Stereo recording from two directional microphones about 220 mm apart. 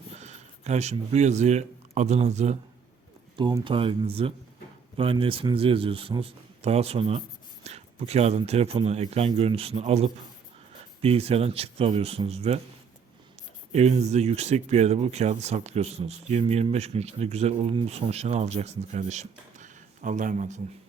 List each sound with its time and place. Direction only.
0.1 s speech: 30° right (ahead or behind)
13.7 s speech: 30° right (ahead or behind)